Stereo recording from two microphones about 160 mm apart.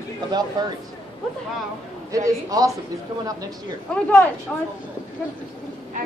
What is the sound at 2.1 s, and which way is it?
Speech, 20° right (ahead or behind).